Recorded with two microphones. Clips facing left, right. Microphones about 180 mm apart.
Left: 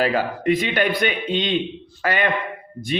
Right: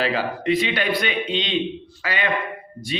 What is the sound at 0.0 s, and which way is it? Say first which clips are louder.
A man's voice: left 3 dB; 45° left (ahead or behind).